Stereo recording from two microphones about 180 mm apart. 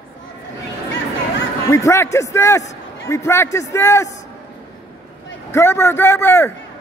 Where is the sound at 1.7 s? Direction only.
15° left (ahead or behind).